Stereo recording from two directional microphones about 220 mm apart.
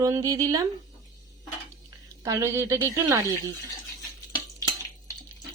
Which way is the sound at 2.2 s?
10° right (ahead or behind).